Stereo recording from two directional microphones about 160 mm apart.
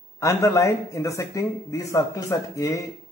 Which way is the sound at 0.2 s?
20° left (ahead or behind).